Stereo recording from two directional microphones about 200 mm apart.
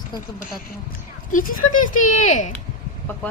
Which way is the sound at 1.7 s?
40° left (ahead or behind).